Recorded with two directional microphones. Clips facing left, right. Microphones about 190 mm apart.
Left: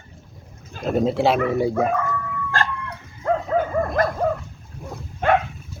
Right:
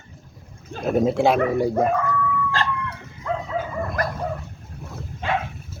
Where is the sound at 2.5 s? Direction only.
50° left (ahead or behind).